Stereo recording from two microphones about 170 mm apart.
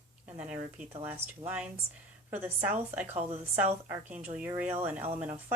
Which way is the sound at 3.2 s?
40° right (ahead or behind).